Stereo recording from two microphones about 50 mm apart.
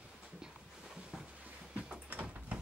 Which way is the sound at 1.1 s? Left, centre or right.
Centre.